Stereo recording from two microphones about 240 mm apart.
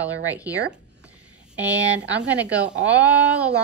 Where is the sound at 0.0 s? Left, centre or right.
Centre.